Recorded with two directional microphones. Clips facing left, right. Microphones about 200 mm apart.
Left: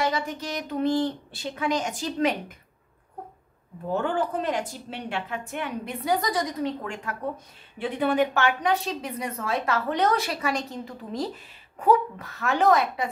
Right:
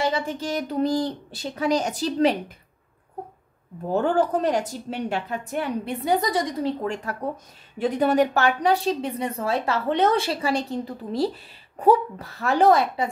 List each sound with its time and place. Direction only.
0.0 s a woman's voice: 30° right (ahead or behind)
3.9 s a woman's voice: 40° right (ahead or behind)